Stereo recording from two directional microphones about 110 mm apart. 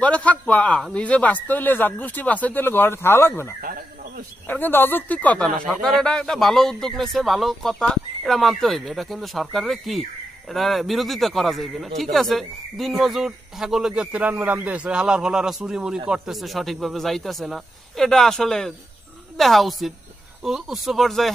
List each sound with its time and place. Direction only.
0.0 s speech: 10° left (ahead or behind)